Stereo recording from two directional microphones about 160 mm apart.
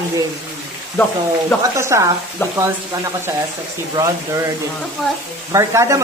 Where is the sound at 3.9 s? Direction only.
20° right (ahead or behind).